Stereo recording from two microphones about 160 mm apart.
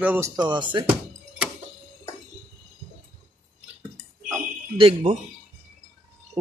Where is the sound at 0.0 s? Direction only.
10° right (ahead or behind).